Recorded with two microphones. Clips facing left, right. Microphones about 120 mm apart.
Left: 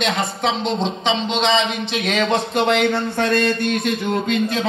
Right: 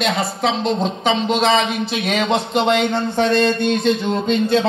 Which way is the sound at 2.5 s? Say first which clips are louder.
Right 1 dB; 20° right (ahead or behind).